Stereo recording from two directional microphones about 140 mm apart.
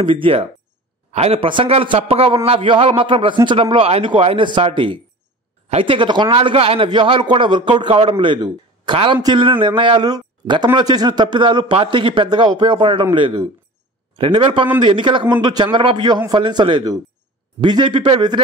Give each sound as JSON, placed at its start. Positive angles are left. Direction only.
{"t": 0.0, "sound": "a man's voice", "side_deg": -40}